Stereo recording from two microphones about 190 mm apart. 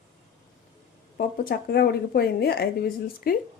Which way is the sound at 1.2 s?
50° left (ahead or behind).